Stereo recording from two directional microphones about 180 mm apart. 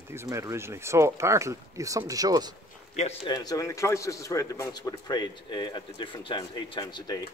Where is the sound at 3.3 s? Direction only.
20° left (ahead or behind).